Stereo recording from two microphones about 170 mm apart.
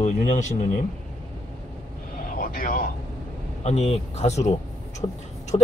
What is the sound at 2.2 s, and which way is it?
Vehicle, 55° left (ahead or behind).